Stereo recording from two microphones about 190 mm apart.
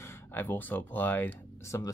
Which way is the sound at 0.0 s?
10° left (ahead or behind).